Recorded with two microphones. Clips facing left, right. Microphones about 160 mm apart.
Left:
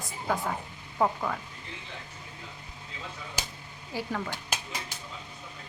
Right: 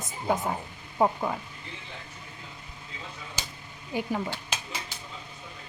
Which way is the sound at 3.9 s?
20° right (ahead or behind).